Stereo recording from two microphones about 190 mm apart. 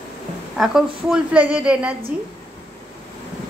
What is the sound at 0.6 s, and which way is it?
A woman's voice, 5° right (ahead or behind).